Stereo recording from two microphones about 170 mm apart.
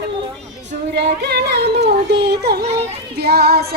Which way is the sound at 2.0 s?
75° right (ahead or behind).